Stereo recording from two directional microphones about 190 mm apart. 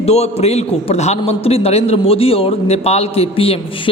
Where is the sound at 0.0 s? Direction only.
35° left (ahead or behind).